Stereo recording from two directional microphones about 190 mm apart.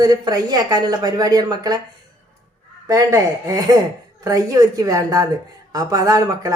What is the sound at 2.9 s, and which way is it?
Speech, 15° right (ahead or behind).